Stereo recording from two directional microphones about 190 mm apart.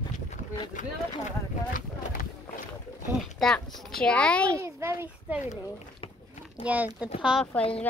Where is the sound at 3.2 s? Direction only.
Centre (ahead or behind).